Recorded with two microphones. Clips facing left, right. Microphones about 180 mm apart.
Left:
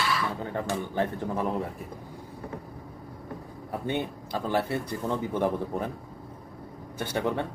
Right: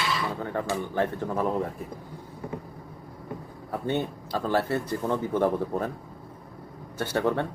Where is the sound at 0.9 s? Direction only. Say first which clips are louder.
Right 1 dB; 15° left (ahead or behind).